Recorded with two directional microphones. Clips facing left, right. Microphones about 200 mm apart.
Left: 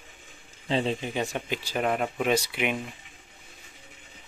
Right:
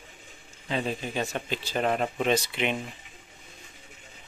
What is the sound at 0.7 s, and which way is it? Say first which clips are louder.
Speech: left 3 dB; 25° left (ahead or behind).